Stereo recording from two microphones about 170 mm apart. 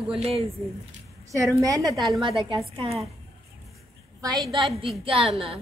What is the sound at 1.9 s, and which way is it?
Speech, centre (ahead or behind).